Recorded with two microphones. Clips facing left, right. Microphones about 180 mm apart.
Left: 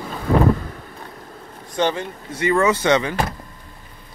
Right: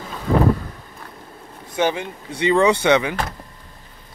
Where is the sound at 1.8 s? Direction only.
15° right (ahead or behind).